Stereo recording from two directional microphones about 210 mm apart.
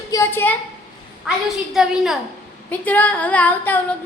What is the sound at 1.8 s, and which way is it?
A woman's voice, centre (ahead or behind).